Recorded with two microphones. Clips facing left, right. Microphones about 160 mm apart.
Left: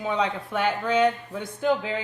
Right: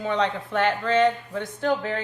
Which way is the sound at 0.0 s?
10° left (ahead or behind).